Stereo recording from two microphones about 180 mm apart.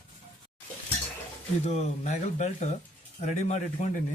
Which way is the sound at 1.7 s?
40° left (ahead or behind).